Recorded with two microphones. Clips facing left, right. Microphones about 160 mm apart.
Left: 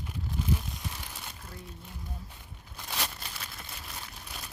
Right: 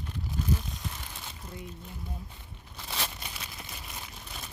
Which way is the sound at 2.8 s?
Centre (ahead or behind).